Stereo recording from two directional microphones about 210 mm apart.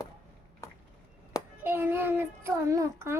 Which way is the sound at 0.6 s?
15° left (ahead or behind).